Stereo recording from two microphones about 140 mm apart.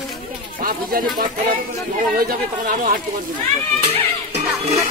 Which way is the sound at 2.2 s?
90° right.